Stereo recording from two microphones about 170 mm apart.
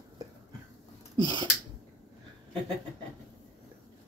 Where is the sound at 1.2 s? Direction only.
25° right (ahead or behind).